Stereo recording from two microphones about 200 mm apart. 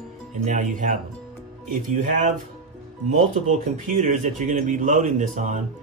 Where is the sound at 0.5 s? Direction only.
40° right (ahead or behind).